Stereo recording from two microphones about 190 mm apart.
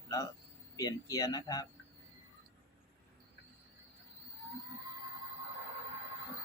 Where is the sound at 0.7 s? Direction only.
20° left (ahead or behind).